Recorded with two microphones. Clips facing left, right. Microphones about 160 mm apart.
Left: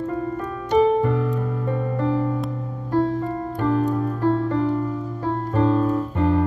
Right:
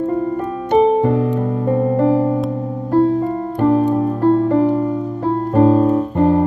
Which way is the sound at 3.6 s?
35° right (ahead or behind).